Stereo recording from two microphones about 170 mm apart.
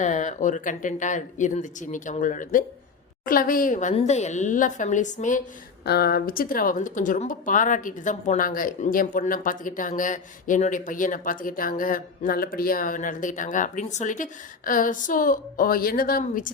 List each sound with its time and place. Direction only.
0.0 s speech: 45° left (ahead or behind)
5.8 s speech: 70° left (ahead or behind)